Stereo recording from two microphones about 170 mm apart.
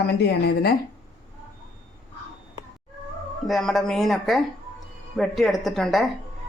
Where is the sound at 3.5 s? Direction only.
Centre (ahead or behind).